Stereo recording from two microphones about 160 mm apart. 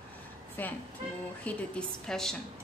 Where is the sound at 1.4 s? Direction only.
5° left (ahead or behind).